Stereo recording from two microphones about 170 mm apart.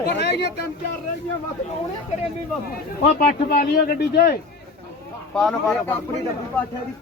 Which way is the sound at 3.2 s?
55° left (ahead or behind).